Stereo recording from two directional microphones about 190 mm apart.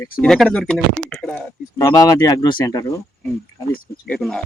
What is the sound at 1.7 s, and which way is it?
Speech, 20° left (ahead or behind).